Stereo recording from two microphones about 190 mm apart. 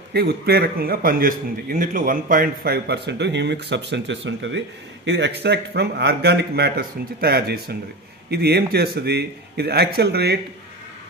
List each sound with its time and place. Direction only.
0.1 s a man's voice: 55° right (ahead or behind)